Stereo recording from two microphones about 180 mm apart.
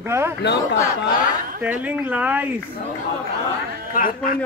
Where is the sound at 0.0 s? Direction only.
15° right (ahead or behind).